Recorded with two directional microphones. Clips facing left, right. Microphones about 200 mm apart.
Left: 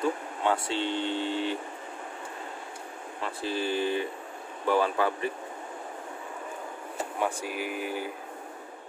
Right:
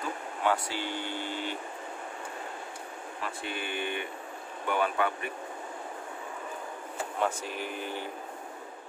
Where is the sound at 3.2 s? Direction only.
30° left (ahead or behind).